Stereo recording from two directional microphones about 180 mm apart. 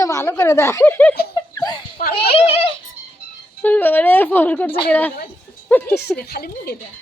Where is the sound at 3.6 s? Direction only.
10° left (ahead or behind).